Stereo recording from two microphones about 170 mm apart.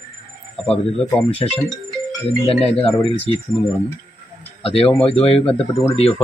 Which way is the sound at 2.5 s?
35° left (ahead or behind).